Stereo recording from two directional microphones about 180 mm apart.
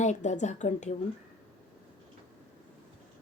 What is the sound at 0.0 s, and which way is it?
Speech, 40° left (ahead or behind).